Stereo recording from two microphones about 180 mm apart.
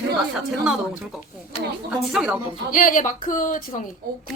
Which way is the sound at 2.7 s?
45° left (ahead or behind).